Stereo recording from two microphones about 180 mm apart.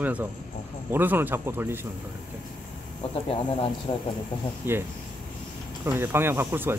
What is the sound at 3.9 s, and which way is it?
Speech, 35° left (ahead or behind).